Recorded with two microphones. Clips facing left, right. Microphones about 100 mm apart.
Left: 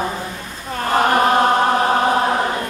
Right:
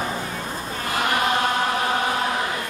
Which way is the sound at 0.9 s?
40° left (ahead or behind).